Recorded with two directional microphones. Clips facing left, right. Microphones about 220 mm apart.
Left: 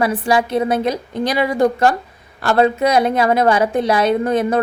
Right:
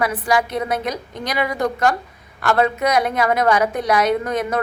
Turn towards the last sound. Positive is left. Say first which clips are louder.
# left 5 dB
turn(degrees=30)  # may be behind; listen again after turning